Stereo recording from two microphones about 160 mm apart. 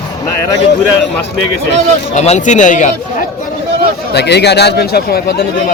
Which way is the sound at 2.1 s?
45° left (ahead or behind).